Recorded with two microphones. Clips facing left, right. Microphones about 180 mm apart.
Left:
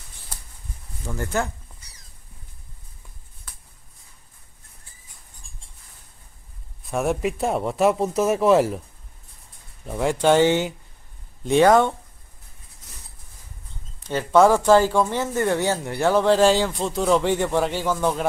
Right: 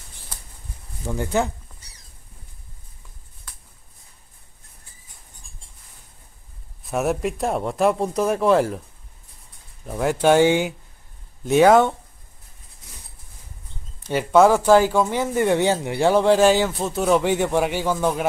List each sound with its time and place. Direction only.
1.0 s speech: 15° right (ahead or behind)
6.8 s speech: centre (ahead or behind)
9.8 s speech: centre (ahead or behind)
14.0 s speech: 10° right (ahead or behind)